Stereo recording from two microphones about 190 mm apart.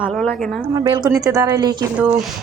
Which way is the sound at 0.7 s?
20° right (ahead or behind).